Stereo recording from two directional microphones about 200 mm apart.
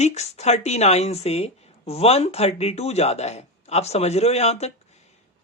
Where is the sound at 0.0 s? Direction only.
35° left (ahead or behind).